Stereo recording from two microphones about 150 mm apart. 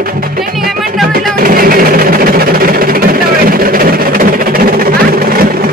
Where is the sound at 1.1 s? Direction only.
75° right (ahead or behind).